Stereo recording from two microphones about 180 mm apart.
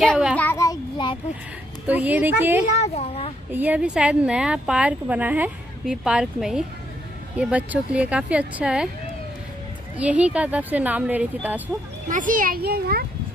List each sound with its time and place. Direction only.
0.0 s a sound: centre (ahead or behind)
0.4 s a sound: 15° left (ahead or behind)
1.9 s speech: 10° right (ahead or behind)
2.7 s a child's voice: 35° left (ahead or behind)
3.5 s speech: 10° right (ahead or behind)
9.9 s speech: 5° right (ahead or behind)
12.1 s a child's voice: 45° right (ahead or behind)